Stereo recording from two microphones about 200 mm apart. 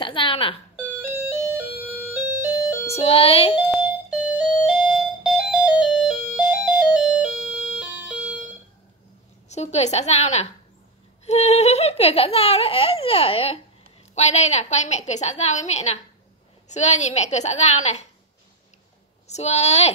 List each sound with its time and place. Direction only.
0.0 s speech: 25° left (ahead or behind)
0.7 s music: 10° right (ahead or behind)
2.9 s baby laughter: 30° left (ahead or behind)
3.7 s music: 5° right (ahead or behind)
9.5 s a woman's voice: 35° left (ahead or behind)
11.2 s baby laughter: 35° left (ahead or behind)
14.1 s a woman's voice: 35° left (ahead or behind)
19.2 s a woman's voice: 35° left (ahead or behind)